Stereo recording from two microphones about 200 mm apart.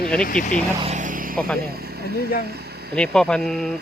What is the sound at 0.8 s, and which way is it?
Vehicle, 35° right (ahead or behind).